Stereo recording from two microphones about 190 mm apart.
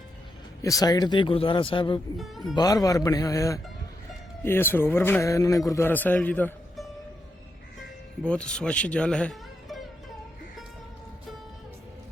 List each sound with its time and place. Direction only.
0.6 s speech: 20° left (ahead or behind)
2.1 s speech: centre (ahead or behind)
2.6 s a man's voice: 20° left (ahead or behind)
8.2 s speech: 5° left (ahead or behind)